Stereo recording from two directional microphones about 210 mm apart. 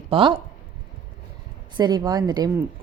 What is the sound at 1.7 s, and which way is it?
Speech, 20° right (ahead or behind).